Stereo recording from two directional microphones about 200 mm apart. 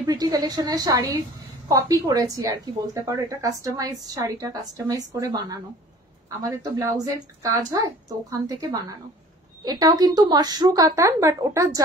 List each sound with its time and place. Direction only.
0.0 s a woman's voice: 20° right (ahead or behind)